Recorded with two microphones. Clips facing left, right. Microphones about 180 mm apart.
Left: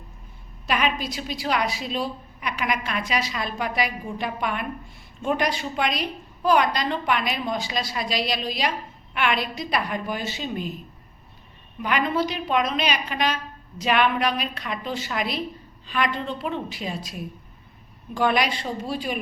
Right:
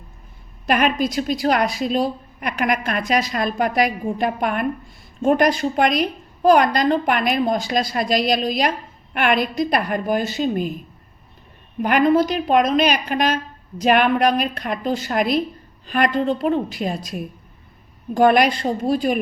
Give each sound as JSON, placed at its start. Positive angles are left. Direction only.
{"t": 0.7, "sound": "a woman's voice", "side_deg": -50}
{"t": 11.8, "sound": "a woman's voice", "side_deg": -50}